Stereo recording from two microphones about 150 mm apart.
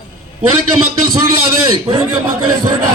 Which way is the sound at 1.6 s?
30° right (ahead or behind).